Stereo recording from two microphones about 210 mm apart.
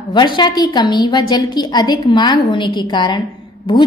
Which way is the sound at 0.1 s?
20° left (ahead or behind).